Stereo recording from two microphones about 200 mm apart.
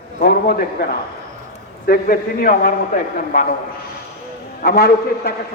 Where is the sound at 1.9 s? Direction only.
45° left (ahead or behind).